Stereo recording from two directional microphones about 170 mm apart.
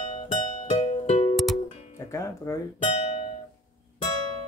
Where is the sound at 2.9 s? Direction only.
35° left (ahead or behind).